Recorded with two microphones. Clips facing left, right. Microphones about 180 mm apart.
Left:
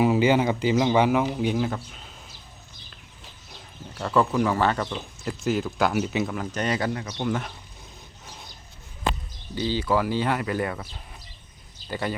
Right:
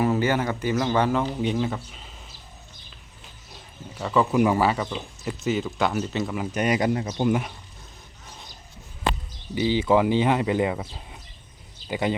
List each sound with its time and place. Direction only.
0.0 s a sound: 10° left (ahead or behind)
0.7 s speech: 15° left (ahead or behind); by 2.1 s centre (ahead or behind)
3.9 s speech: 5° right (ahead or behind)
6.3 s speech: 10° right (ahead or behind)
9.6 s speech: 20° right (ahead or behind)
11.9 s a man's voice: 15° right (ahead or behind)